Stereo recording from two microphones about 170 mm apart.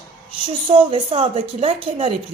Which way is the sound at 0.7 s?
35° right (ahead or behind).